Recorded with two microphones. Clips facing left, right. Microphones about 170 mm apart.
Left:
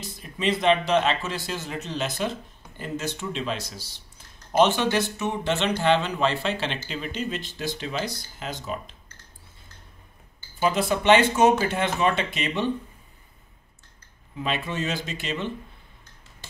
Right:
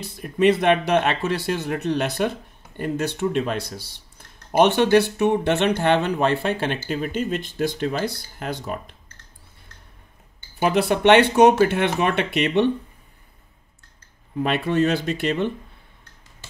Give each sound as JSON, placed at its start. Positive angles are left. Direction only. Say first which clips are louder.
{"t": 0.0, "sound": "speech", "louder": "right 9 dB", "side_deg": -60}
{"t": 10.5, "sound": "speech", "louder": "right 4 dB", "side_deg": -65}
{"t": 14.3, "sound": "speech", "louder": "right 7 dB", "side_deg": -60}